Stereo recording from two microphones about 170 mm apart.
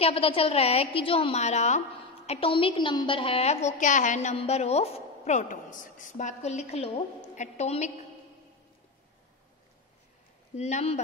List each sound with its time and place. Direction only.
0.0 s a woman's voice: 35° left (ahead or behind)
10.5 s a woman's voice: 40° left (ahead or behind)